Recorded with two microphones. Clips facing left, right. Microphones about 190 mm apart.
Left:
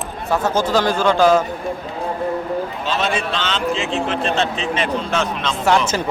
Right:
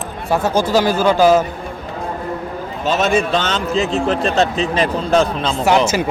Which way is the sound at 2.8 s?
45° right (ahead or behind).